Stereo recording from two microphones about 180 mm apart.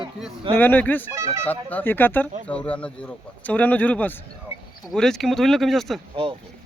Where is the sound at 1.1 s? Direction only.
15° right (ahead or behind).